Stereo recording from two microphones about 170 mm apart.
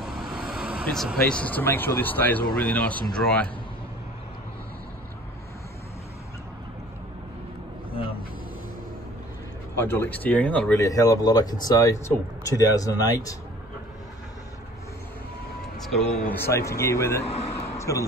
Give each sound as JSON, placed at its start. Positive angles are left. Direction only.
{"t": 0.0, "sound": "speech", "side_deg": 0}
{"t": 7.9, "sound": "a sound", "side_deg": 30}
{"t": 9.8, "sound": "speech", "side_deg": 15}
{"t": 10.8, "sound": "speech", "side_deg": 20}
{"t": 15.8, "sound": "speech", "side_deg": 0}
{"t": 16.4, "sound": "speech", "side_deg": 15}